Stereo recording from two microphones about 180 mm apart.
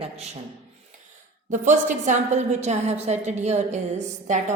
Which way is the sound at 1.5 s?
45° right (ahead or behind).